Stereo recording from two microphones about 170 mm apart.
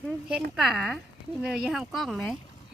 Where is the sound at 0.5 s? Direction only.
Centre (ahead or behind).